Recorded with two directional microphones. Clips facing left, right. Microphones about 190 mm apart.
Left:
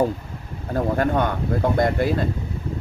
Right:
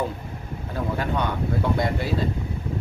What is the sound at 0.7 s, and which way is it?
Speech, 50° left (ahead or behind).